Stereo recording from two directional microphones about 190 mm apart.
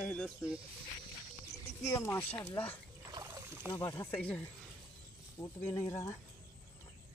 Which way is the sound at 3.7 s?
15° left (ahead or behind).